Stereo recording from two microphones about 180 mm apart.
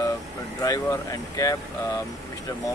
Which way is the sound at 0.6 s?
20° left (ahead or behind).